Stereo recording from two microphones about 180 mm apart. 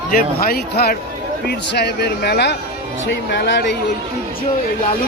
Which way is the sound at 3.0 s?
75° left (ahead or behind).